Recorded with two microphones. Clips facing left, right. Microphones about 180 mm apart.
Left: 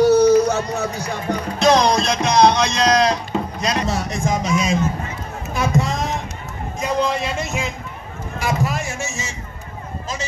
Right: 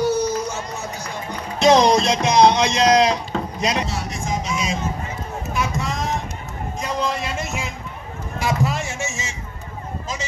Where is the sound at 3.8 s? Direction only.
40° left (ahead or behind).